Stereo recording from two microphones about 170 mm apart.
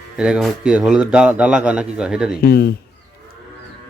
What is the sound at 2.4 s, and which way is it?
Speech, 65° left (ahead or behind).